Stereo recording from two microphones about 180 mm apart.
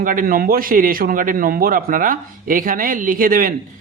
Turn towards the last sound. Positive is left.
turn(degrees=-50)  # may be behind; listen again after turning